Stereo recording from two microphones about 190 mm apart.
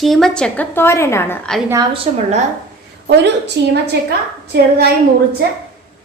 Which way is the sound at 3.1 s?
65° right (ahead or behind).